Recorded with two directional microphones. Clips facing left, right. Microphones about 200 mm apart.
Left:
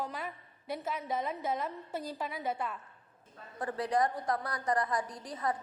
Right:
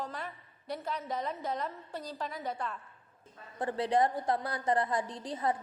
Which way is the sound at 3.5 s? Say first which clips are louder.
Right 2 dB; 30° right (ahead or behind).